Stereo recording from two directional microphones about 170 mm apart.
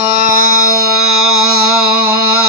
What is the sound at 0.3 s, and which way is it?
Music, 60° right (ahead or behind).